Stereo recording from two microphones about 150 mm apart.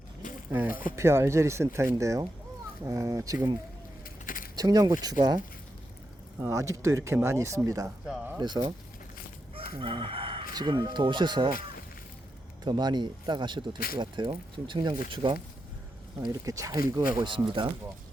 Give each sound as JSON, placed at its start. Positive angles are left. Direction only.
{"t": 0.7, "sound": "speech", "side_deg": 70}
{"t": 0.9, "sound": "speech", "side_deg": -15}
{"t": 4.5, "sound": "speech", "side_deg": -25}
{"t": 6.4, "sound": "speech", "side_deg": -20}
{"t": 9.7, "sound": "speech", "side_deg": -35}
{"t": 12.6, "sound": "speech", "side_deg": -30}
{"t": 13.7, "sound": "speech", "side_deg": 80}
{"t": 14.0, "sound": "speech", "side_deg": -30}
{"t": 16.2, "sound": "speech", "side_deg": -25}